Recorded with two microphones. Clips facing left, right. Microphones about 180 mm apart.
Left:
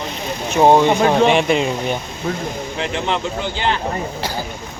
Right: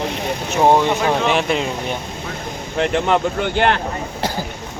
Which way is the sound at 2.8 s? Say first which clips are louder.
Right 6 dB; 50° right (ahead or behind).